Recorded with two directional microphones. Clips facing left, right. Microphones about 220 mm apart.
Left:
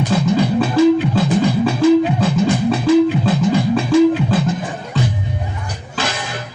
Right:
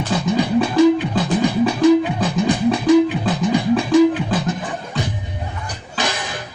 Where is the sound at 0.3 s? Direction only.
15° right (ahead or behind).